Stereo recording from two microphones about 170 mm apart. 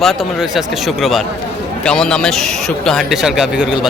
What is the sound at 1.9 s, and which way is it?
Speech, 5° left (ahead or behind).